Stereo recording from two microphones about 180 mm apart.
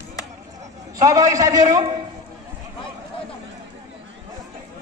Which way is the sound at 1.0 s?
20° right (ahead or behind).